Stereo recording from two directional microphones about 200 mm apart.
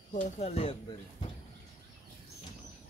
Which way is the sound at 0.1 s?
30° left (ahead or behind).